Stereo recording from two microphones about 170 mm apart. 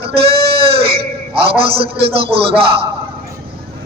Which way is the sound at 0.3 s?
30° right (ahead or behind).